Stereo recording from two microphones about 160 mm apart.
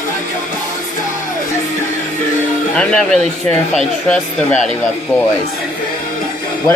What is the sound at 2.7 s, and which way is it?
Speech, 5° left (ahead or behind).